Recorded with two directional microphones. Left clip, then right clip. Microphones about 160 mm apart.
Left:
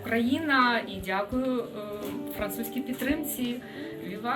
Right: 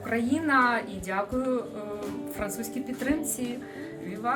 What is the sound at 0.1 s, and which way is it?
A woman's voice, 10° right (ahead or behind).